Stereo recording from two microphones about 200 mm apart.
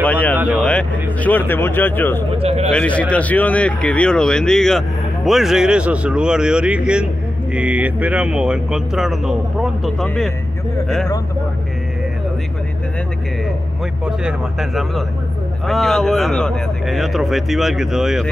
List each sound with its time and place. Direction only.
0.0 s a sound: 5° left (ahead or behind)
0.4 s a sound: 10° right (ahead or behind)
0.7 s speech: 5° left (ahead or behind)
2.3 s speech: 30° right (ahead or behind)
2.7 s speech: 5° left (ahead or behind)
14.0 s speech: 5° right (ahead or behind)